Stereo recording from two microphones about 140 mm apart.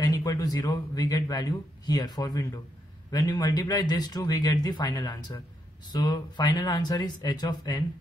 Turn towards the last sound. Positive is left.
turn(degrees=30)  # may be behind; listen again after turning